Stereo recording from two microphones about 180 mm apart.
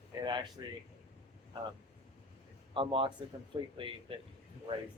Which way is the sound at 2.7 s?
30° right (ahead or behind).